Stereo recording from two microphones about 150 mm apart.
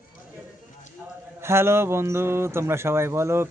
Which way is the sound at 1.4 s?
15° right (ahead or behind).